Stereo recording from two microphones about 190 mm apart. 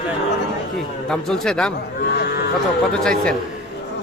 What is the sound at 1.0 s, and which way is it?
Speech, 5° left (ahead or behind).